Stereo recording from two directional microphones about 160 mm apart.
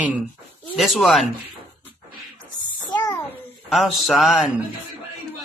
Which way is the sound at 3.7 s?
Centre (ahead or behind).